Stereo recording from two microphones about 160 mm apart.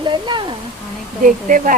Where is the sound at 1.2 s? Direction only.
55° right (ahead or behind).